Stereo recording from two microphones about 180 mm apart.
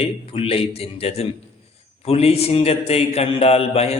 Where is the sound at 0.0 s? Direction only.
35° left (ahead or behind).